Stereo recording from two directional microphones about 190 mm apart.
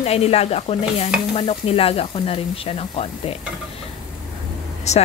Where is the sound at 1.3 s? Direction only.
30° left (ahead or behind).